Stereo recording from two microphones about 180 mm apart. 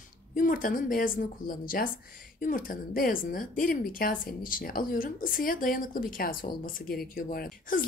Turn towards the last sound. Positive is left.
turn(degrees=55)  # may be behind; listen again after turning